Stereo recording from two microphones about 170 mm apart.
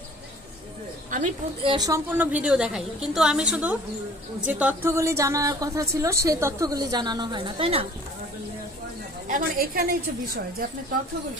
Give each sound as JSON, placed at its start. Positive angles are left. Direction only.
{"t": 1.6, "sound": "a woman's voice", "side_deg": -30}
{"t": 1.9, "sound": "a woman's voice", "side_deg": -10}
{"t": 9.3, "sound": "a woman's voice", "side_deg": -60}